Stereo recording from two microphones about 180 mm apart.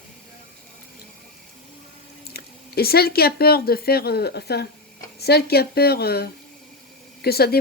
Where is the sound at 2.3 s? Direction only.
60° left (ahead or behind).